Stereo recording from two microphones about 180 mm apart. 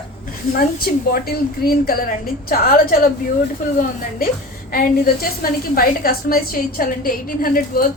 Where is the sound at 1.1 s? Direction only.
55° left (ahead or behind).